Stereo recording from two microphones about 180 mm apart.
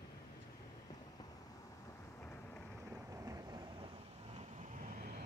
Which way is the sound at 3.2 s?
20° right (ahead or behind).